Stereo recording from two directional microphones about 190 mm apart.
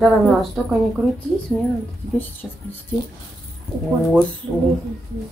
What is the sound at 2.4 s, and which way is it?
Speech, centre (ahead or behind).